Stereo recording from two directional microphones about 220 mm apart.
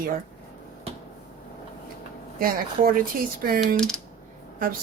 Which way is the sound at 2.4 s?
40° right (ahead or behind).